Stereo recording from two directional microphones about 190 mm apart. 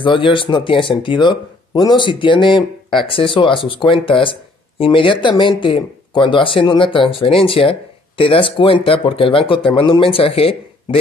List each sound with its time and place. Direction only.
0.0 s speech: 25° left (ahead or behind)